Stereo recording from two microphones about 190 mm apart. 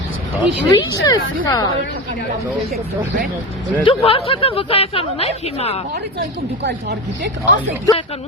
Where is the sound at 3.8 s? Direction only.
30° left (ahead or behind).